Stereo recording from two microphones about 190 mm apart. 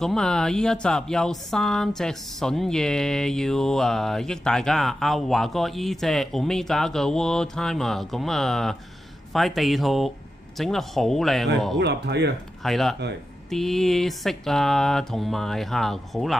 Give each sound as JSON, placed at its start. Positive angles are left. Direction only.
{"t": 0.0, "sound": "speech", "side_deg": 0}
{"t": 11.8, "sound": "speech", "side_deg": -65}
{"t": 12.6, "sound": "speech", "side_deg": 0}